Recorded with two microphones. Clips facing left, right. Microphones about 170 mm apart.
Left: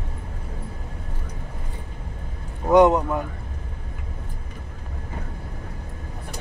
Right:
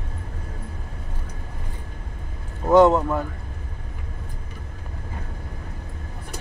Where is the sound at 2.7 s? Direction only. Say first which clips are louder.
Right 1 dB; 15° left (ahead or behind).